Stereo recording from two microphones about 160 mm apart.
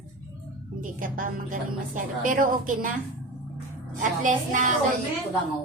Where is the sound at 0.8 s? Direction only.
55° right (ahead or behind).